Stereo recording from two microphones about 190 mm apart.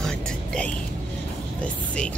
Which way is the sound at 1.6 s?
5° left (ahead or behind).